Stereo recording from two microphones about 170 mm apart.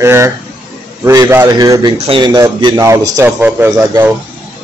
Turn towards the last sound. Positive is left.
turn(degrees=-10)  # may be behind; listen again after turning